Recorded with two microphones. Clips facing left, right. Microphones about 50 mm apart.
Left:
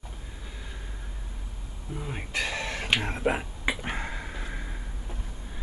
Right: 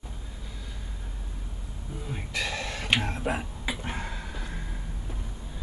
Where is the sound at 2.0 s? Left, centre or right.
Left.